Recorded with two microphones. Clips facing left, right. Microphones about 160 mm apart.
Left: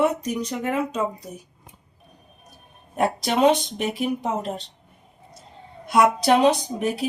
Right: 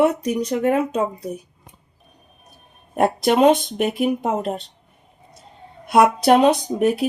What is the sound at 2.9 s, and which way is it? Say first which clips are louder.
Speech: right 5 dB; 55° right (ahead or behind).